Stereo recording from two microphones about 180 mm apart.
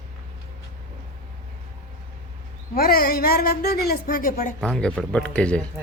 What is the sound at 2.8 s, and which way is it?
A woman's voice, 55° left (ahead or behind).